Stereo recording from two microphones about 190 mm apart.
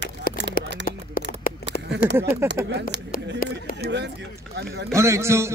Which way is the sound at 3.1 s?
50° left (ahead or behind).